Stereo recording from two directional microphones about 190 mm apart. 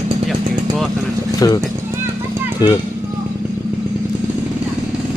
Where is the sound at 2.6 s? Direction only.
20° left (ahead or behind).